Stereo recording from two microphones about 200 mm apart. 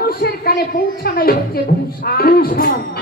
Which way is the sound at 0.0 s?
50° left (ahead or behind).